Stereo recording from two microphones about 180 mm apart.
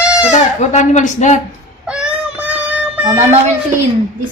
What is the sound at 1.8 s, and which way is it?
Child singing, 5° right (ahead or behind).